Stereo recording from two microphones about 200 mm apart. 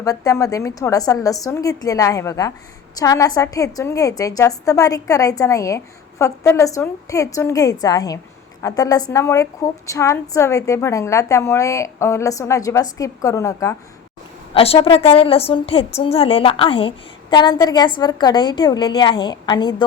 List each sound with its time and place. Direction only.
0.0 s a woman's voice: 15° left (ahead or behind)
14.5 s a woman's voice: 30° left (ahead or behind)